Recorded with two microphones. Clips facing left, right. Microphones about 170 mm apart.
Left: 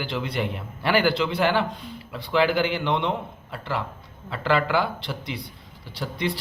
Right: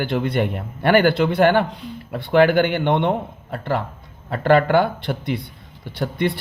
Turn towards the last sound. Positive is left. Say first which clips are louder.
# right 6 dB
turn(degrees=-55)  # may be behind; listen again after turning